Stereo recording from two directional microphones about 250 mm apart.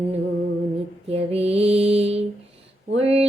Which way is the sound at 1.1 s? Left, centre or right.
Right.